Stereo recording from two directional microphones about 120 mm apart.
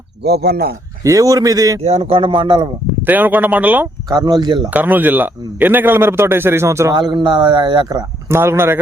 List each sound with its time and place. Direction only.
1.0 s speech: 30° right (ahead or behind)
1.8 s a man's voice: 60° right (ahead or behind); by 2.6 s 40° right (ahead or behind)
3.0 s a man's voice: 15° right (ahead or behind)
4.1 s speech: 35° right (ahead or behind)
4.7 s a man's voice: 15° right (ahead or behind)
6.9 s speech: 40° right (ahead or behind)
8.3 s speech: 20° right (ahead or behind)